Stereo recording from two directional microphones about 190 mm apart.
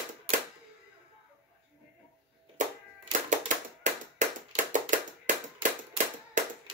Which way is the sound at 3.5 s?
40° right (ahead or behind).